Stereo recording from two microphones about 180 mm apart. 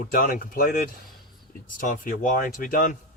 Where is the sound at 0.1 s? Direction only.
50° left (ahead or behind).